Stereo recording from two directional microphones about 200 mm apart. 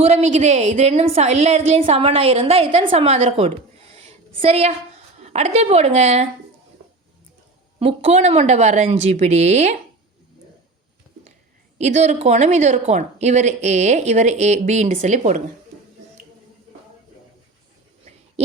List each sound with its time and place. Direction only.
0.0 s speech: 30° right (ahead or behind)
3.9 s a sound: 30° right (ahead or behind)
5.1 s a woman's voice: 35° right (ahead or behind)
7.8 s speech: 30° right (ahead or behind)
11.8 s speech: 35° right (ahead or behind)